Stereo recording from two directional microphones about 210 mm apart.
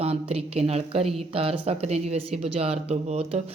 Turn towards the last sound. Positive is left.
turn(degrees=-30)  # may be behind; listen again after turning